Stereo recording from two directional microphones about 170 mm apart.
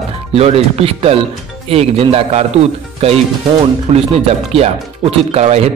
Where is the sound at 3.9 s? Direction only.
35° right (ahead or behind).